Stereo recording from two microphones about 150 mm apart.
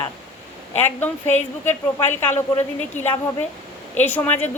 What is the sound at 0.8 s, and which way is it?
A woman's voice, 15° left (ahead or behind).